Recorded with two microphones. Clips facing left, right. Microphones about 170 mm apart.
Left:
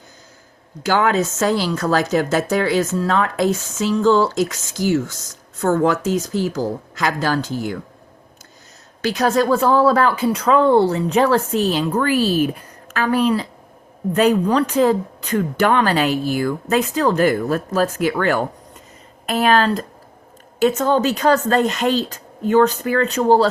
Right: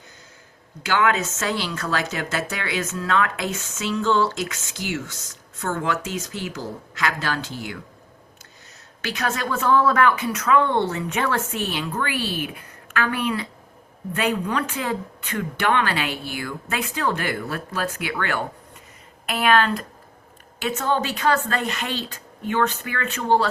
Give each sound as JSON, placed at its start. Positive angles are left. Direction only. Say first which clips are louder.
{"t": 0.8, "sound": "speech", "louder": "left 4 dB", "side_deg": 40}
{"t": 9.0, "sound": "speech", "louder": "left 10 dB", "side_deg": 35}